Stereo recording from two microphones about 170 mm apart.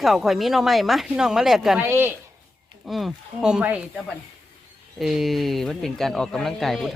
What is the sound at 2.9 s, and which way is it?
Speech, centre (ahead or behind).